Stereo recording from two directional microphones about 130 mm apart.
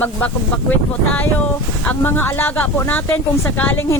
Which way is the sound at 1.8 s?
15° left (ahead or behind).